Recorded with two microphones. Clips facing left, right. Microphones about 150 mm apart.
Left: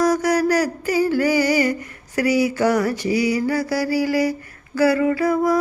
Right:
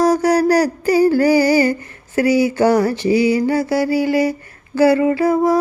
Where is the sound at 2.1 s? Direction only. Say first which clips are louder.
Right 4 dB; 30° right (ahead or behind).